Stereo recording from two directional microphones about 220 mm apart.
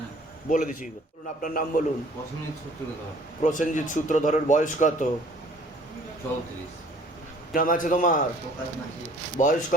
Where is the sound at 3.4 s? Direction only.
35° left (ahead or behind).